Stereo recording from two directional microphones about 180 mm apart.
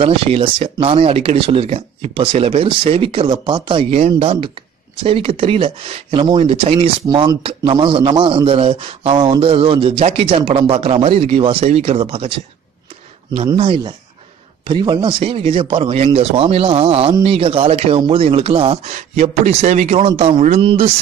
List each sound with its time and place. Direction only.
0.0 s speech: 30° right (ahead or behind)
13.6 s speech: 30° right (ahead or behind)